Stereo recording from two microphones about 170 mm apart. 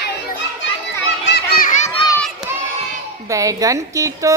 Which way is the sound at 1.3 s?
75° left (ahead or behind).